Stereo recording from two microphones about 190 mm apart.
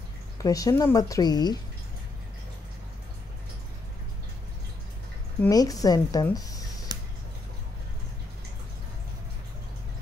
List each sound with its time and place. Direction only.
0.4 s a woman's voice: 20° left (ahead or behind)
5.5 s a woman's voice: 20° left (ahead or behind)
6.2 s a sound: 20° left (ahead or behind)